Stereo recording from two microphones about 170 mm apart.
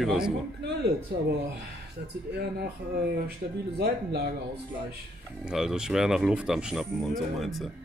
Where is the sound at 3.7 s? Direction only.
70° right (ahead or behind).